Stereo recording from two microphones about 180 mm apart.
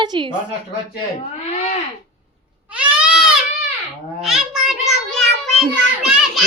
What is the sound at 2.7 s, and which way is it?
Goat, 5° right (ahead or behind).